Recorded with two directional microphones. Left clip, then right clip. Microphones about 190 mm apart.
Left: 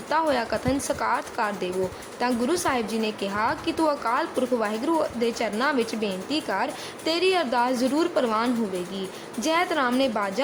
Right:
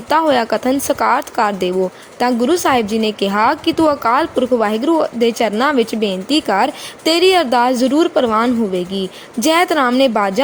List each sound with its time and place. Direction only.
0.1 s a woman's voice: 45° right (ahead or behind)